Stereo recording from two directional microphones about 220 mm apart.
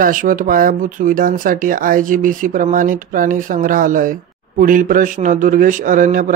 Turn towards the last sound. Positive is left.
turn(degrees=-35)  # may be behind; listen again after turning